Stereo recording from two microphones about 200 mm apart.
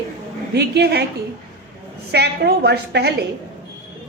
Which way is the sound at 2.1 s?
55° right (ahead or behind).